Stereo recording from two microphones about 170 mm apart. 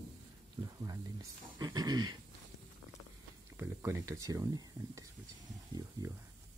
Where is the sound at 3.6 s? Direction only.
15° right (ahead or behind).